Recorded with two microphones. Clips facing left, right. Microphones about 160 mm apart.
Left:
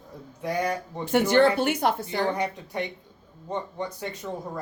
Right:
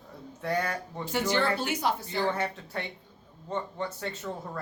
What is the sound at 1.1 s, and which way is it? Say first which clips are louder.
A woman's voice: left 8 dB; 55° left (ahead or behind).